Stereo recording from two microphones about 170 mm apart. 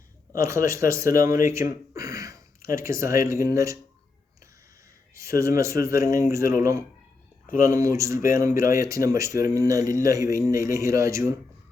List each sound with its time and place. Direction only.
0.3 s speech: 15° right (ahead or behind)
5.1 s speech: 15° right (ahead or behind)